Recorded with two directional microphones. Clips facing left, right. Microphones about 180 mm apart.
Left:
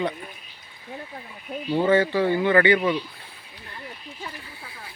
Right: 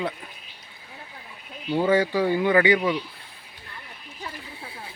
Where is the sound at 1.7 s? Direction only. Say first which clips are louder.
Left 1 dB; 10° right (ahead or behind).